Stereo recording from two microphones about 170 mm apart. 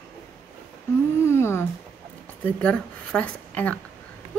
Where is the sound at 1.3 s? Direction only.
15° left (ahead or behind).